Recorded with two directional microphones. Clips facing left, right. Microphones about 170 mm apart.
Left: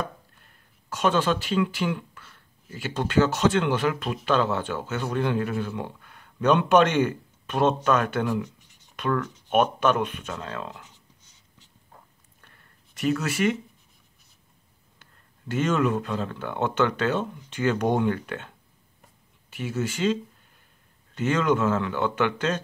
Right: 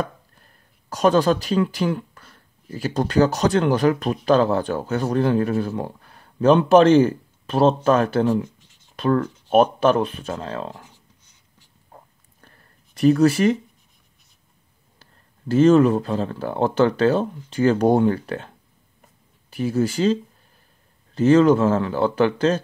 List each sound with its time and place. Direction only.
0.0 s speech: 35° right (ahead or behind)
11.9 s a sound: 40° right (ahead or behind)
15.0 s speech: 30° right (ahead or behind)
19.5 s speech: 35° right (ahead or behind)